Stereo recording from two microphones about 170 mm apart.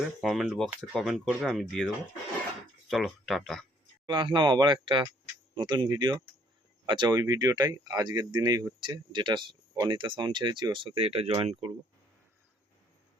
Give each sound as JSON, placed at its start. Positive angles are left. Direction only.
{"t": 0.2, "sound": "speech", "side_deg": 0}
{"t": 2.9, "sound": "speech", "side_deg": 0}
{"t": 4.0, "sound": "speech", "side_deg": -30}